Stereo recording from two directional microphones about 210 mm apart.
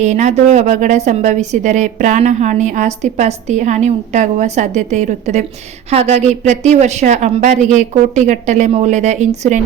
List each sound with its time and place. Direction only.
0.0 s a woman's voice: 35° right (ahead or behind)